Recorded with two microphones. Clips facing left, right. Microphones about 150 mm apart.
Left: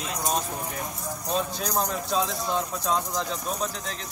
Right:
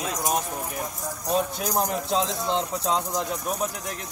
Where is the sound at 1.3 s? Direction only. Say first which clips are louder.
Right 3 dB; 15° right (ahead or behind).